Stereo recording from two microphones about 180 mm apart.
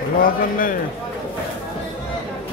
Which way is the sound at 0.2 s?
50° left (ahead or behind).